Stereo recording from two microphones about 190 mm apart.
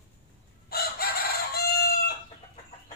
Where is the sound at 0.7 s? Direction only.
55° left (ahead or behind).